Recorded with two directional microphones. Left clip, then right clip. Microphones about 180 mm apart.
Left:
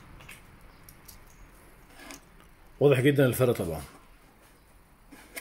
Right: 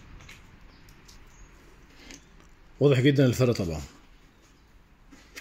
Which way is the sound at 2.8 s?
35° right (ahead or behind).